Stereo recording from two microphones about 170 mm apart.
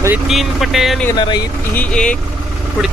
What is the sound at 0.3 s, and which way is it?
Speech, centre (ahead or behind).